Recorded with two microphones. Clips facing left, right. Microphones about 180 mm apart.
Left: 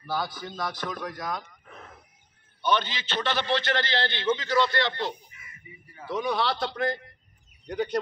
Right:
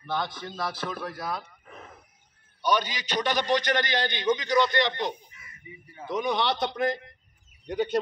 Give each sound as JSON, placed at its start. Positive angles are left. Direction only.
{"t": 0.0, "sound": "a man's voice", "side_deg": 5}